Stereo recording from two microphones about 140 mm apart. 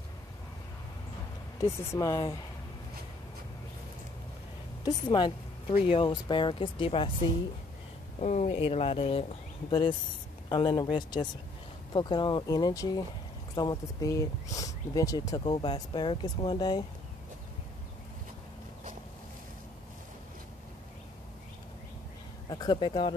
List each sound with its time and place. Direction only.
1.6 s speech: 25° left (ahead or behind)
4.8 s speech: 30° left (ahead or behind)
5.7 s speech: 50° left (ahead or behind)
6.0 s speech: 35° left (ahead or behind)
8.2 s speech: 55° left (ahead or behind)
8.5 s speech: 40° left (ahead or behind)
22.5 s speech: 30° left (ahead or behind)